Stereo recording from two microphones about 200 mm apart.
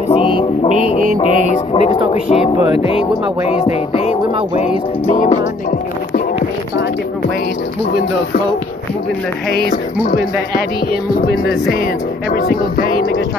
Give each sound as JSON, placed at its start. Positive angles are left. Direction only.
{"t": 0.1, "sound": "music", "side_deg": 25}
{"t": 9.5, "sound": "music", "side_deg": 50}
{"t": 12.3, "sound": "music", "side_deg": 50}